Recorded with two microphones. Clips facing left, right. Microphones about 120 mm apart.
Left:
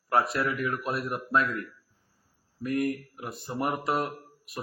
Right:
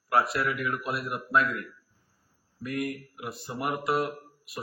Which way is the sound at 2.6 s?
35° left (ahead or behind).